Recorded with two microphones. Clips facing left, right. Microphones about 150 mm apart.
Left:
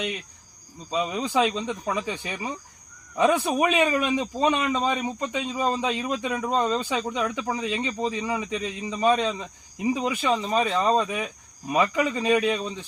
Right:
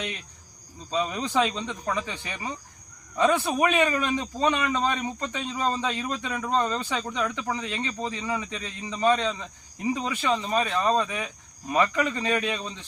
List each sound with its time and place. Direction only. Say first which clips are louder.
0.9 s a man's voice: left 1 dB; 10° left (ahead or behind)